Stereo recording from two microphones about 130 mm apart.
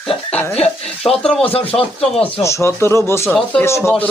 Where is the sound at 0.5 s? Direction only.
50° left (ahead or behind).